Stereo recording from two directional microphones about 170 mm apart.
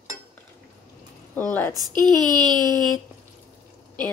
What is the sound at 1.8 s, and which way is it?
A woman's voice, 25° right (ahead or behind).